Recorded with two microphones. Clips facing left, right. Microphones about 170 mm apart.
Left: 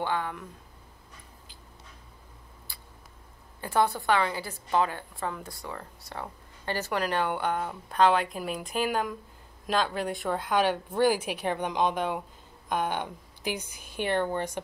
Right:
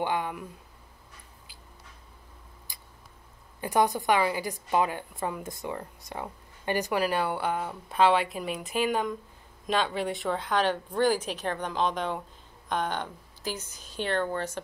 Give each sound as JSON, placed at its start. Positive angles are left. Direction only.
{"t": 0.0, "sound": "speech", "side_deg": -15}
{"t": 2.7, "sound": "a sound", "side_deg": -15}
{"t": 3.6, "sound": "speech", "side_deg": -15}